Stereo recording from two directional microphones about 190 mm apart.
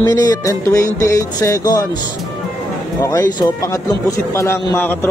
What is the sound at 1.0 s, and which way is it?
Speech, 15° left (ahead or behind).